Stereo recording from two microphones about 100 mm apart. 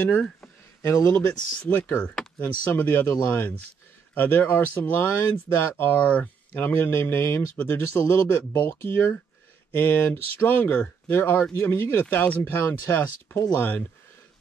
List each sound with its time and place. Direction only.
0.8 s speech: 25° left (ahead or behind)